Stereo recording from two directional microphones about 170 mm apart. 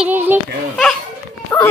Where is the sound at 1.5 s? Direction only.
5° left (ahead or behind).